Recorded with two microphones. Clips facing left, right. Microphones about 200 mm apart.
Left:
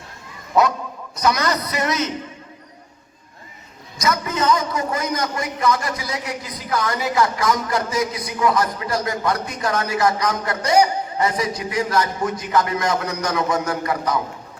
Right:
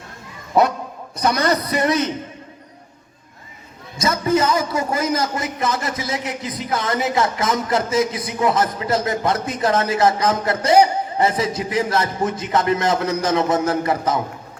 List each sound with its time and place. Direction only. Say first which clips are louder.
1.4 s a man's voice: right 3 dB; 30° right (ahead or behind)
3.9 s a man's voice: right 4 dB; 25° right (ahead or behind)